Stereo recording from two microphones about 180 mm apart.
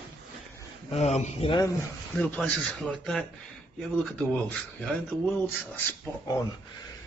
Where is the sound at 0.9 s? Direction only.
40° left (ahead or behind).